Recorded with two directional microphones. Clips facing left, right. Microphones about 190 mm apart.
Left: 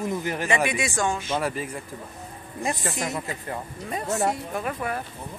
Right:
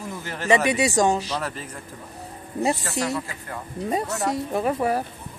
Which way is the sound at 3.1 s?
20° left (ahead or behind).